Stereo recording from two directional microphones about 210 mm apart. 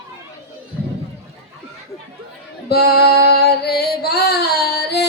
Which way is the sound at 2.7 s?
50° left (ahead or behind).